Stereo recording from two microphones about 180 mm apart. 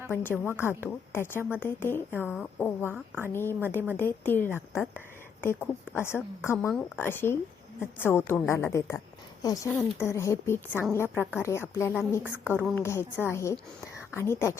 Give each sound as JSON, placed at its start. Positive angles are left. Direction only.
{"t": 0.1, "sound": "a woman's voice", "side_deg": 10}
{"t": 12.2, "sound": "a woman's voice", "side_deg": -10}
{"t": 12.7, "sound": "a woman's voice", "side_deg": 15}